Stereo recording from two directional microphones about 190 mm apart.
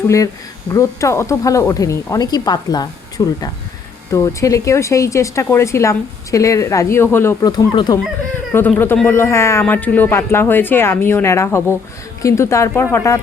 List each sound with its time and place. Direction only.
0.7 s speech: 15° left (ahead or behind)
8.5 s speech: 10° left (ahead or behind)